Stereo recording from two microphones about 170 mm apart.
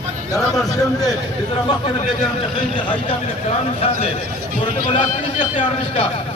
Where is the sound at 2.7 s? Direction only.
30° left (ahead or behind).